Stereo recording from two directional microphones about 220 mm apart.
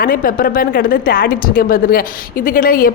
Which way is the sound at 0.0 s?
40° left (ahead or behind).